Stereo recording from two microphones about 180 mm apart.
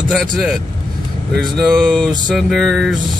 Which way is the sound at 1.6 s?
Centre (ahead or behind).